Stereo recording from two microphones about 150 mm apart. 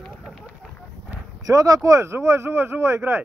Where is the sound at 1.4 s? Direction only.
25° right (ahead or behind).